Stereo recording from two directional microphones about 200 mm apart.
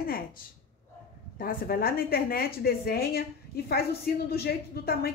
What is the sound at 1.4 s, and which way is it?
Speech, 45° left (ahead or behind).